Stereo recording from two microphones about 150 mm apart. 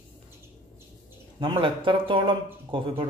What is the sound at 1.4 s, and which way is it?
Speech, 35° right (ahead or behind).